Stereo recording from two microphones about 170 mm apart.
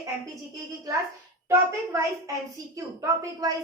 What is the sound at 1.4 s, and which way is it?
A woman's voice, 15° right (ahead or behind).